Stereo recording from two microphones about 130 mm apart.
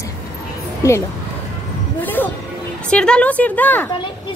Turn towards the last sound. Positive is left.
turn(degrees=15)  # may be behind; listen again after turning